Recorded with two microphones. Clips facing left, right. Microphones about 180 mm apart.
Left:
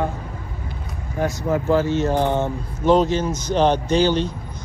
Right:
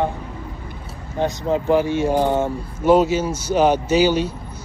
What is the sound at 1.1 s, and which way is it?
Speech, 20° right (ahead or behind).